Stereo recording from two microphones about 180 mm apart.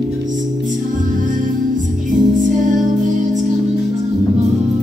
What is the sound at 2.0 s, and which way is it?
Music, 45° right (ahead or behind).